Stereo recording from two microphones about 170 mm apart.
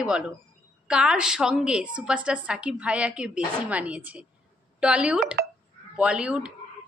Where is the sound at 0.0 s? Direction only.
5° right (ahead or behind).